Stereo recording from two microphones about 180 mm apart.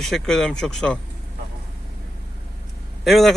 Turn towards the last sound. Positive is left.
turn(degrees=0)  # may be behind; listen again after turning